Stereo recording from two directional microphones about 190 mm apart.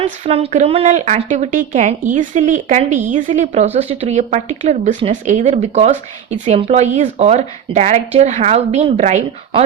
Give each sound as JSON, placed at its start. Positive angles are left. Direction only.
{"t": 0.0, "sound": "speech", "side_deg": -30}